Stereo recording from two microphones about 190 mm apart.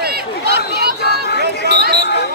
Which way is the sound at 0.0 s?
55° right (ahead or behind).